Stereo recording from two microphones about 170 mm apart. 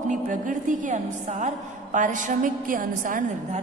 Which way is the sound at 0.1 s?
50° right (ahead or behind).